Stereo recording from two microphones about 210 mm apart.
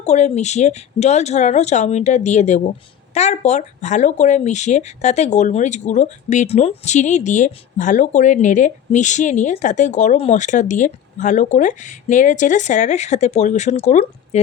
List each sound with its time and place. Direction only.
0.0 s speech: 30° left (ahead or behind)